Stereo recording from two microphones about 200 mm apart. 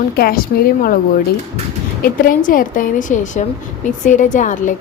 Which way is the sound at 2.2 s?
45° left (ahead or behind).